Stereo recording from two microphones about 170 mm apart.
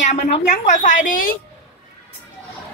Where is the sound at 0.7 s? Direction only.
45° left (ahead or behind).